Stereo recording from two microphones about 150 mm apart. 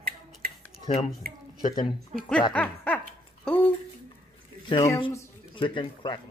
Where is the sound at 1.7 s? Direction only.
30° left (ahead or behind).